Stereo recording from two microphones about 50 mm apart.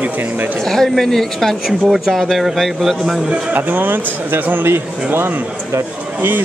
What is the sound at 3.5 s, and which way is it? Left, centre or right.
Speech, right.